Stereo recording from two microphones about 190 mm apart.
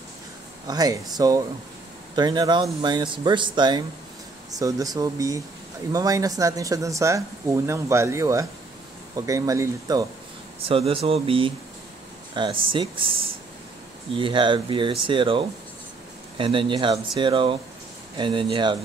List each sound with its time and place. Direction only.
0.7 s speech: 20° right (ahead or behind)
10.6 s speech: 30° right (ahead or behind)